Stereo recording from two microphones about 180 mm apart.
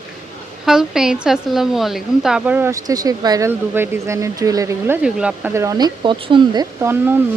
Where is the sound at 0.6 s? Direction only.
5° right (ahead or behind).